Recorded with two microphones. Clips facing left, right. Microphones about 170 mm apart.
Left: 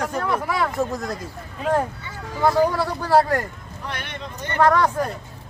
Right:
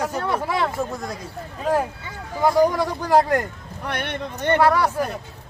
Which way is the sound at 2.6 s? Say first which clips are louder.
Right 2 dB; 15° right (ahead or behind).